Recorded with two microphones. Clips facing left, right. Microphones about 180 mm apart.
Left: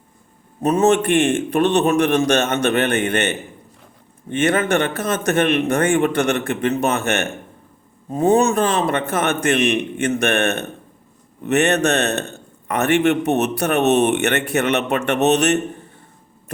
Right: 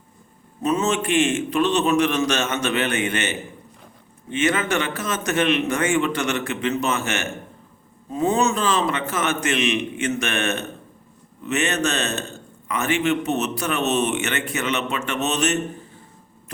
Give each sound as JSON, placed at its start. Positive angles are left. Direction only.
{"t": 0.6, "sound": "a man's voice", "side_deg": 60}